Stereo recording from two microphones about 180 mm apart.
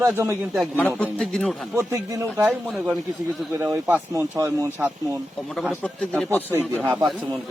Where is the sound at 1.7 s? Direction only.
15° right (ahead or behind).